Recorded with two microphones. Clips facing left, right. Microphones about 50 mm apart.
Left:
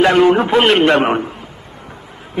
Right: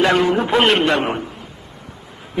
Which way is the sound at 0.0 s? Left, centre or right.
Left.